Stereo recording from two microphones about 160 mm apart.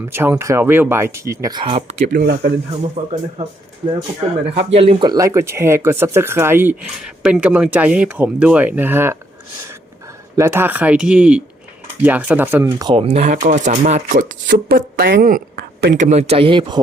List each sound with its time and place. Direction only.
0.0 s speech: 15° right (ahead or behind)
1.6 s speech: 40° right (ahead or behind)
2.1 s speech: 75° right (ahead or behind)
2.9 s speech: 35° right (ahead or behind); by 9.1 s 15° right (ahead or behind)
10.3 s speech: 15° right (ahead or behind)
12.8 s speech: 35° right (ahead or behind); by 16.0 s 65° right (ahead or behind)
16.0 s speech: 45° right (ahead or behind); by 16.8 s 30° right (ahead or behind)